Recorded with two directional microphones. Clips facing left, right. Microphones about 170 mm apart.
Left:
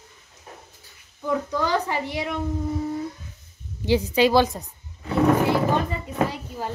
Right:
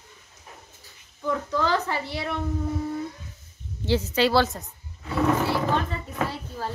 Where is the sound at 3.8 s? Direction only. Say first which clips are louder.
Left 3 dB; 15° left (ahead or behind).